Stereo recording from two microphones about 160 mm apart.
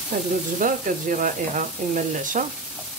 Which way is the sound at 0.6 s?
55° right (ahead or behind).